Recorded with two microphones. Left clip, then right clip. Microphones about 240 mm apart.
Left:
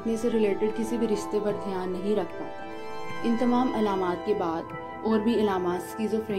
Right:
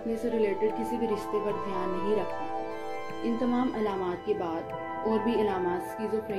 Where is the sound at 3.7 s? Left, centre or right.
Left.